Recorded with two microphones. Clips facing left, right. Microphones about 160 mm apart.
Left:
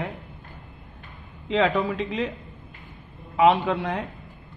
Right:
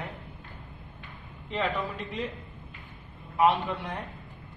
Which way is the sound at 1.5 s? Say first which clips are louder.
Left 8 dB; 90° left.